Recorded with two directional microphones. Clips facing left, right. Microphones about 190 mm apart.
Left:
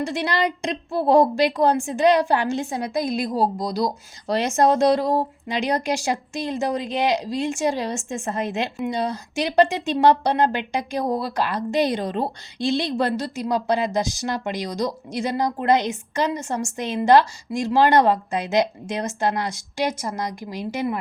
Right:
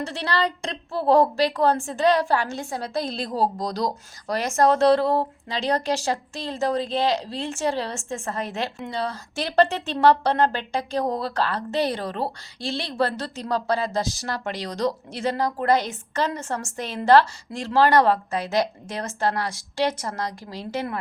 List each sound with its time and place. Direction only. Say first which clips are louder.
0.0 s speech: left 2 dB; 15° left (ahead or behind)
4.3 s speech: left 1 dB; 20° left (ahead or behind)